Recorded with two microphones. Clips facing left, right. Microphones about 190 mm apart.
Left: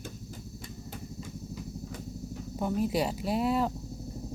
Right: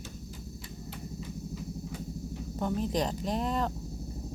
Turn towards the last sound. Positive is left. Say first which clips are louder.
# left 3 dB
turn(degrees=5)  # may be behind; listen again after turning